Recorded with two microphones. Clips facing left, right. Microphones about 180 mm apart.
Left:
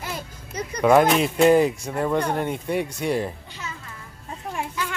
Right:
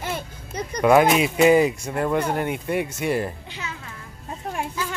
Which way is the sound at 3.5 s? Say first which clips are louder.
Right 2 dB; 65° right (ahead or behind).